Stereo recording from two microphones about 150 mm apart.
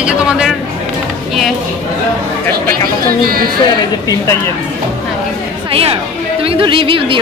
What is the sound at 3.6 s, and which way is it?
Speech, 25° left (ahead or behind).